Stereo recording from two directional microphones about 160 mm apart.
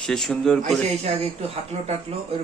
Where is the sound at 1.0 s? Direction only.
40° right (ahead or behind).